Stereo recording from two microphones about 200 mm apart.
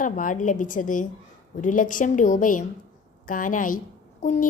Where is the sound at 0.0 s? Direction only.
40° left (ahead or behind).